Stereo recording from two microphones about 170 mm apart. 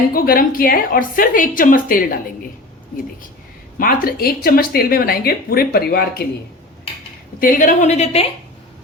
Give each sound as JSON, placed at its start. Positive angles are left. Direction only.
{"t": 0.1, "sound": "speech", "side_deg": 60}
{"t": 3.8, "sound": "speech", "side_deg": 60}
{"t": 7.3, "sound": "a woman's voice", "side_deg": 55}